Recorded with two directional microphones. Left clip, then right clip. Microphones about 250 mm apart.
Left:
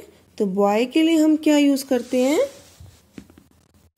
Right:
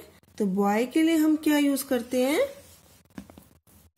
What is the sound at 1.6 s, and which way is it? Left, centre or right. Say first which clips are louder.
Speech: left 7 dB; right.